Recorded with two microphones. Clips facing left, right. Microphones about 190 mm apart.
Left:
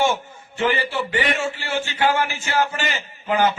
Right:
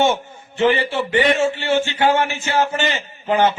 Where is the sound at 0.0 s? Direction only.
25° right (ahead or behind).